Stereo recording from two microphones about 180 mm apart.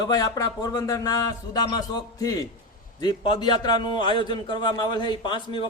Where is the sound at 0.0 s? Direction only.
20° left (ahead or behind).